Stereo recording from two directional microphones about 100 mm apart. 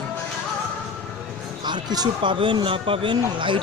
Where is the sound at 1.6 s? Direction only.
45° right (ahead or behind).